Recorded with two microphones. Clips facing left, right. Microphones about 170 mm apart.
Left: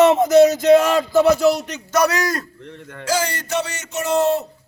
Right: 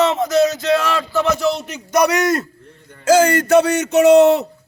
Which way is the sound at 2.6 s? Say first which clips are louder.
Left 8 dB; 90° left.